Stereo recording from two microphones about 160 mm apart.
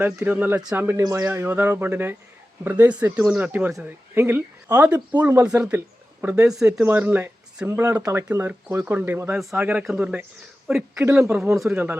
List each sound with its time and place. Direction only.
0.0 s speech: 10° right (ahead or behind)
11.0 s speech: 15° right (ahead or behind)
11.5 s speech: centre (ahead or behind)